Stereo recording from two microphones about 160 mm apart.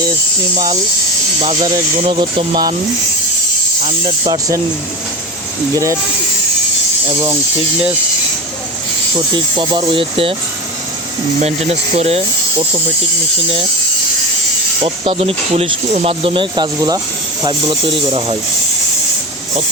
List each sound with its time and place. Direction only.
0.5 s speech: 25° right (ahead or behind)
1.5 s speech: 45° right (ahead or behind)
2.0 s speech: 35° right (ahead or behind)
3.8 s snake: 40° right (ahead or behind)
4.3 s speech: 20° right (ahead or behind)
5.7 s speech: 20° right (ahead or behind)
9.1 s speech: 30° right (ahead or behind)
11.3 s speech: 40° right (ahead or behind)
14.8 s speech: 35° right (ahead or behind)